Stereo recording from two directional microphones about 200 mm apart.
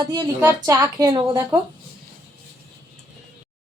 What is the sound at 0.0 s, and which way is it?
A woman's voice, 20° right (ahead or behind).